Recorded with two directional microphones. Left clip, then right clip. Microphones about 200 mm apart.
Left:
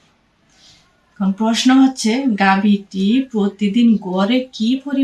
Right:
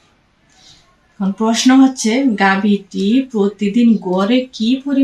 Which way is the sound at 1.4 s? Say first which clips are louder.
Right 2 dB; 30° left (ahead or behind).